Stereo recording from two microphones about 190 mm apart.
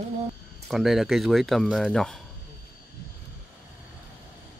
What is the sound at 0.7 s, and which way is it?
Speech, centre (ahead or behind).